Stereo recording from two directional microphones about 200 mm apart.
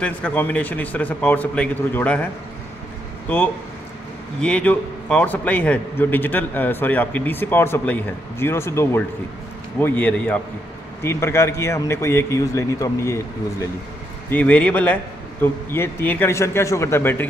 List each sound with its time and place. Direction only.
0.0 s a man's voice: 10° left (ahead or behind)
3.3 s a man's voice: 10° left (ahead or behind)